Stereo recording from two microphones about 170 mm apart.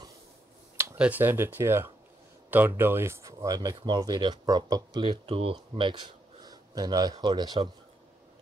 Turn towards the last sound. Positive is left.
turn(degrees=-25)  # may be behind; listen again after turning